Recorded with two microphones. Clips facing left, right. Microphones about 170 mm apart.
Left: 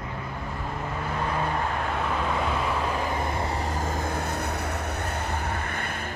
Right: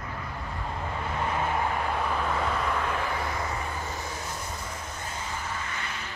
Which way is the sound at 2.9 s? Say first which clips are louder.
Left 3 dB; 20° left (ahead or behind).